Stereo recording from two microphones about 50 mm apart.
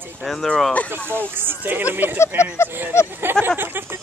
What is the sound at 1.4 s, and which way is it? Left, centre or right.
Speech, right.